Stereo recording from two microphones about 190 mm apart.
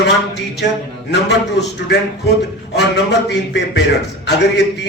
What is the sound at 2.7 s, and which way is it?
A man's voice, 65° left (ahead or behind).